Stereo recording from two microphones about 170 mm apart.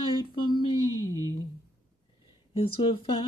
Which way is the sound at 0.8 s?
20° right (ahead or behind).